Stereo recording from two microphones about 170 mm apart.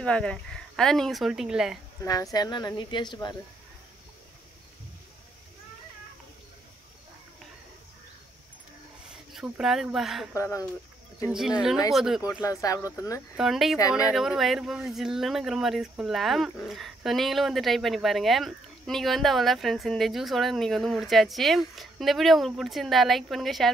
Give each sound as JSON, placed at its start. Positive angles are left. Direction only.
{"t": 0.0, "sound": "speech", "side_deg": 5}
{"t": 2.3, "sound": "speech", "side_deg": 20}
{"t": 9.1, "sound": "speech", "side_deg": -5}
{"t": 10.3, "sound": "speech", "side_deg": 20}
{"t": 11.9, "sound": "speech", "side_deg": 0}
{"t": 12.2, "sound": "speech", "side_deg": 20}
{"t": 13.4, "sound": "speech", "side_deg": 0}